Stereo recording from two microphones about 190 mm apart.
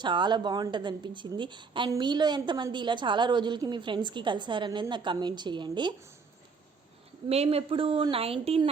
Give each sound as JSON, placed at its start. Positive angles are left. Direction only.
{"t": 0.0, "sound": "a woman's voice", "side_deg": -25}
{"t": 7.3, "sound": "a woman's voice", "side_deg": -35}